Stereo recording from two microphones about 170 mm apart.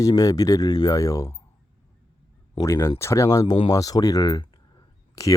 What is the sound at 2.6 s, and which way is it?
Speech, 15° left (ahead or behind).